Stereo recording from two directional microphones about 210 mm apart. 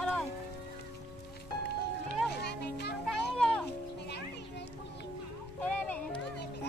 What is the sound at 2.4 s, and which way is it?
Music, 50° left (ahead or behind).